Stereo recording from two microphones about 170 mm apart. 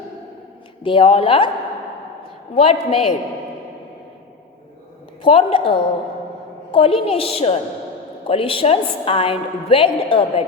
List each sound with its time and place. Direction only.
0.8 s a woman's voice: 30° left (ahead or behind)
2.6 s a woman's voice: 35° left (ahead or behind)
5.2 s a woman's voice: 35° left (ahead or behind)